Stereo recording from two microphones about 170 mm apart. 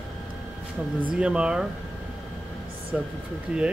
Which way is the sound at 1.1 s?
5° right (ahead or behind).